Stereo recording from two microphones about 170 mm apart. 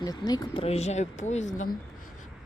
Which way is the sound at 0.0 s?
25° left (ahead or behind).